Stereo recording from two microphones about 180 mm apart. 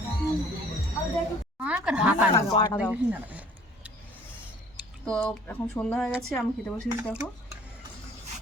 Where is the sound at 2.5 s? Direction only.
35° left (ahead or behind).